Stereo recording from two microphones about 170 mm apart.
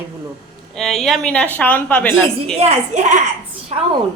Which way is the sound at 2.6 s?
40° right (ahead or behind).